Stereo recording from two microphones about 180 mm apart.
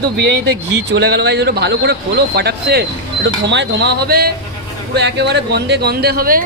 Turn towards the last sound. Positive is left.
turn(degrees=-55)  # may be behind; listen again after turning